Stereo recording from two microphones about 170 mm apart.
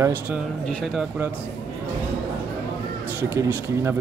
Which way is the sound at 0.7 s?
Centre (ahead or behind).